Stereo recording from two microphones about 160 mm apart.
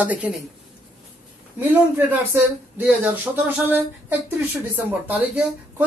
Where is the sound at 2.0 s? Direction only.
15° right (ahead or behind).